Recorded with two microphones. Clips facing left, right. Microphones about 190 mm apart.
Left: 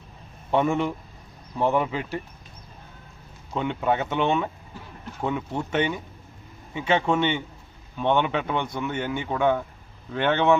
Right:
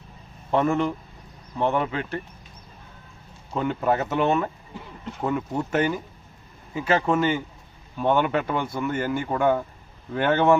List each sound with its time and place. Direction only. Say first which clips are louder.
0.5 s speech: right 1 dB; centre (ahead or behind)
3.5 s speech: right 1 dB; centre (ahead or behind)